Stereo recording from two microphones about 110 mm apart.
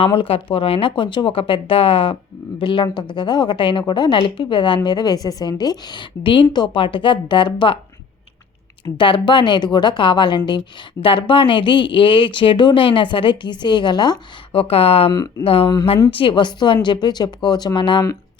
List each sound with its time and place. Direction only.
0.0 s a woman's voice: 55° left (ahead or behind)
9.0 s a woman's voice: 50° left (ahead or behind)
14.6 s speech: 60° left (ahead or behind)
15.1 s speech: 35° left (ahead or behind)
15.4 s a woman's voice: 55° left (ahead or behind)